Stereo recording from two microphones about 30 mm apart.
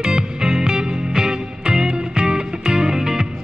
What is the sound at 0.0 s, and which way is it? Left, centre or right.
Music, right.